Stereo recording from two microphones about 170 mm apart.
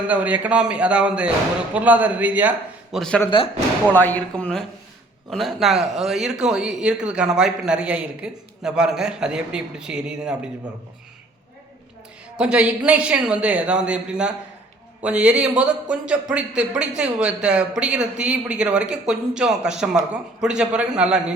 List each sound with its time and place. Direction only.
0.1 s speech: 10° right (ahead or behind)
3.0 s a man's voice: 5° left (ahead or behind)
3.2 s speech: 30° left (ahead or behind)
3.9 s a man's voice: 10° left (ahead or behind)
12.4 s a man's voice: 5° right (ahead or behind)